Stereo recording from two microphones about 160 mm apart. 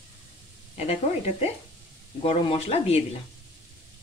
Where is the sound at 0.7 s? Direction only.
40° left (ahead or behind).